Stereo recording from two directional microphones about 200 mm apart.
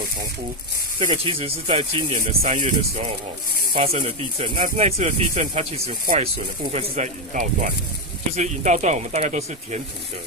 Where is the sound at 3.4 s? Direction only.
50° left (ahead or behind).